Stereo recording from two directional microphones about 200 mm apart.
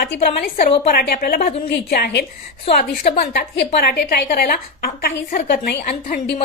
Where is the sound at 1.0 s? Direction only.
45° left (ahead or behind).